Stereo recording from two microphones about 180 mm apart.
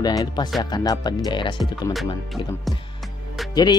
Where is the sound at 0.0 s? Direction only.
20° left (ahead or behind).